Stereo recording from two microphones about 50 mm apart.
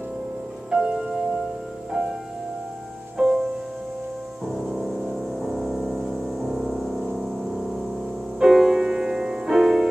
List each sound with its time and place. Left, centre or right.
0.7 s music: right
3.2 s music: centre
4.5 s music: centre
5.1 s a sound: centre
8.4 s music: centre